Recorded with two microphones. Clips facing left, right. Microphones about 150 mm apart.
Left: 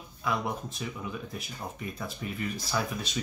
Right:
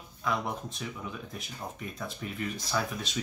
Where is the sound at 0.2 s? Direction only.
5° left (ahead or behind).